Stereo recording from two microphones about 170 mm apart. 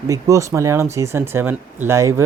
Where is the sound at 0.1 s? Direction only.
20° right (ahead or behind).